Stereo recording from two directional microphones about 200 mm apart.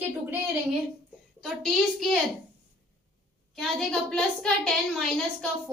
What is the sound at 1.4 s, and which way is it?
Speech, centre (ahead or behind).